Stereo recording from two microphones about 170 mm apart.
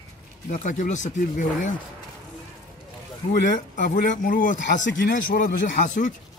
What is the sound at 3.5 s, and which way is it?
Speech, 50° left (ahead or behind).